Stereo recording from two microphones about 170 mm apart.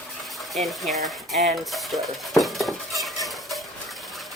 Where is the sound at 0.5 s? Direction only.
Centre (ahead or behind).